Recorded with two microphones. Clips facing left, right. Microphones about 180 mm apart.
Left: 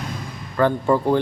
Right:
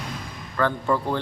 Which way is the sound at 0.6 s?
20° left (ahead or behind).